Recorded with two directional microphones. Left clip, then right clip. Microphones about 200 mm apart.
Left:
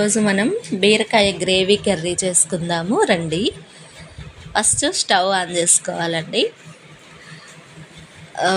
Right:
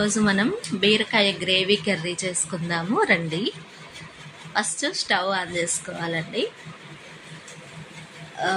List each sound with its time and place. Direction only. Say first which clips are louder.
0.2 s a woman's voice: left 4 dB; 30° left (ahead or behind)